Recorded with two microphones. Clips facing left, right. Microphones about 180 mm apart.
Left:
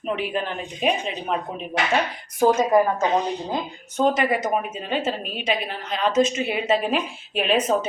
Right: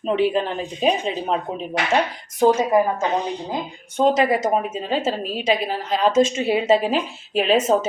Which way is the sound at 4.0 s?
25° right (ahead or behind).